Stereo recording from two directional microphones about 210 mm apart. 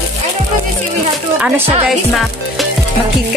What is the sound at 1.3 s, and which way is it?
Speech, 5° right (ahead or behind).